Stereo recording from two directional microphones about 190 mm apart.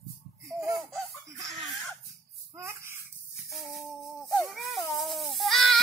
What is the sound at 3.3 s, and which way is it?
Music, centre (ahead or behind).